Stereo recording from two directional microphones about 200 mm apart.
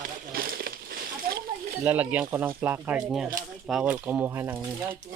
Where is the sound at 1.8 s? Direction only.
10° right (ahead or behind).